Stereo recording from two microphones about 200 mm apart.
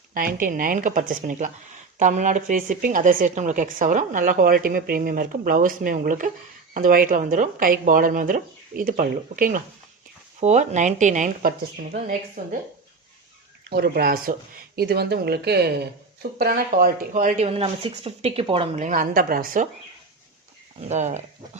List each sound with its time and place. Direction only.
0.1 s speech: 45° right (ahead or behind)
13.7 s speech: 50° right (ahead or behind); by 18.9 s 25° right (ahead or behind)
18.9 s speech: 45° right (ahead or behind)
20.7 s speech: 35° right (ahead or behind)